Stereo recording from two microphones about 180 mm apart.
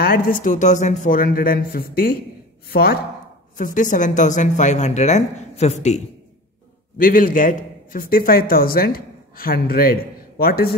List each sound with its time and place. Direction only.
0.0 s a man's voice: 50° left (ahead or behind)
3.5 s speech: 45° left (ahead or behind)
7.0 s a man's voice: 50° left (ahead or behind)